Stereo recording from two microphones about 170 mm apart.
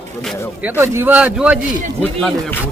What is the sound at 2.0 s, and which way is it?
Speech, 10° left (ahead or behind).